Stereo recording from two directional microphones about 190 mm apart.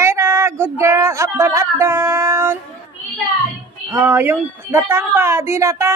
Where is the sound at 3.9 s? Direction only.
15° right (ahead or behind).